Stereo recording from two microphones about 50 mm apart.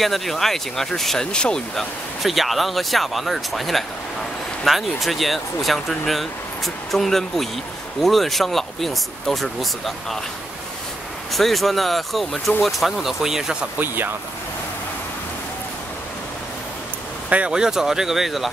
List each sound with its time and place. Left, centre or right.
0.0 s speech: centre
1.8 s speech: centre
11.3 s speech: centre
13.7 s speech: right
17.5 s speech: centre